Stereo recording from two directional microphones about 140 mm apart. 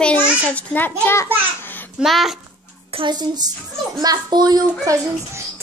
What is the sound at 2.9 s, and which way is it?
A child's voice, 30° right (ahead or behind).